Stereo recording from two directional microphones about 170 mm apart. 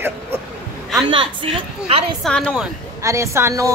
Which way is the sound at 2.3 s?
5° left (ahead or behind).